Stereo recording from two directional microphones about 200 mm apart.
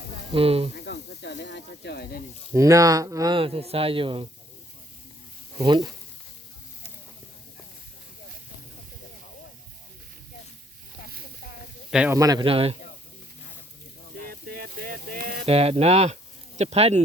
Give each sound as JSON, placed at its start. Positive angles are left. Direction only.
{"t": 0.3, "sound": "speech", "side_deg": -30}
{"t": 0.9, "sound": "speech", "side_deg": 60}
{"t": 2.5, "sound": "speech", "side_deg": -15}
{"t": 5.5, "sound": "speech", "side_deg": -20}
{"t": 11.9, "sound": "speech", "side_deg": -5}
{"t": 12.1, "sound": "speech", "side_deg": -20}
{"t": 14.4, "sound": "a sound", "side_deg": -50}
{"t": 15.4, "sound": "speech", "side_deg": -30}